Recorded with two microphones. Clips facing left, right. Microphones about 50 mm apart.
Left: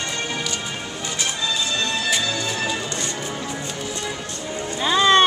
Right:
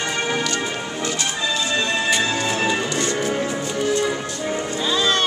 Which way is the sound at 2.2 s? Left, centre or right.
Right.